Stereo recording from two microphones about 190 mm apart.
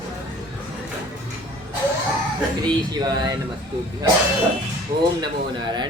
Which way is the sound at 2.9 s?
20° right (ahead or behind).